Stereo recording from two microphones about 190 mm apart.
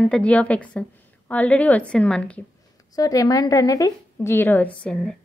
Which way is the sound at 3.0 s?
20° left (ahead or behind).